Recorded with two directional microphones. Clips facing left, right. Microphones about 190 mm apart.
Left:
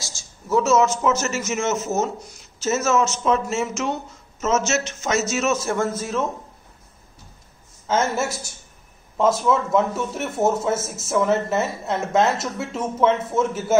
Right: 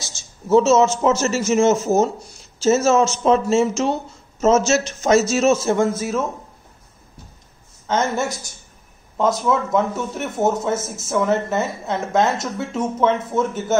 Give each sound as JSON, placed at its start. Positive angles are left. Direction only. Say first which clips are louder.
{"t": 0.0, "sound": "a man's voice", "louder": "right 3 dB", "side_deg": -20}
{"t": 7.8, "sound": "a woman's voice", "louder": "right 1 dB", "side_deg": 5}